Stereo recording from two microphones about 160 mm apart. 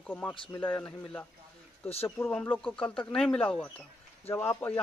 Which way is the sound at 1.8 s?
40° left (ahead or behind).